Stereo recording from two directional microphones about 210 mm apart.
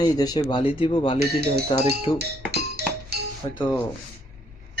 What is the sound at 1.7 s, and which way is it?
Speech, 25° left (ahead or behind).